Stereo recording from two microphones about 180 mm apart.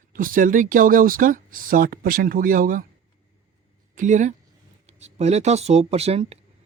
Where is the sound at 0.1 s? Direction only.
50° right (ahead or behind).